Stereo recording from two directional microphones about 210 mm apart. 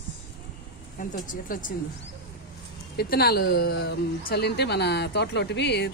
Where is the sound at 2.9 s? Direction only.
50° left (ahead or behind).